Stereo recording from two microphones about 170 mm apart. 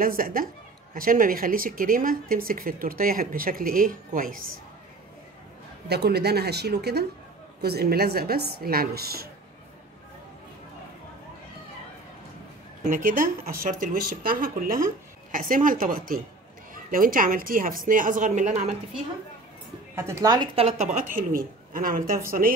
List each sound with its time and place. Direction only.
0.0 s a woman's voice: 55° right (ahead or behind)
5.9 s a woman's voice: 75° right (ahead or behind)
12.8 s a woman's voice: 50° right (ahead or behind)
20.0 s a woman's voice: 20° right (ahead or behind)
20.5 s speech: 40° right (ahead or behind)
21.1 s a woman's voice: 55° right (ahead or behind)